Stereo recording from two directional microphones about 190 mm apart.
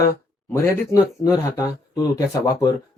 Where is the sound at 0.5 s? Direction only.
15° left (ahead or behind).